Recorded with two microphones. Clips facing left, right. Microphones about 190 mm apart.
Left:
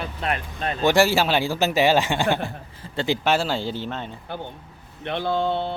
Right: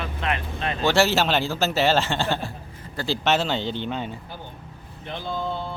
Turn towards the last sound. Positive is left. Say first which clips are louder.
# left 6 dB
turn(degrees=70)  # may be behind; listen again after turning